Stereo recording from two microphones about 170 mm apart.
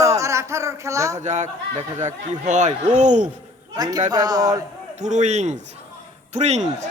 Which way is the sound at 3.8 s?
20° right (ahead or behind).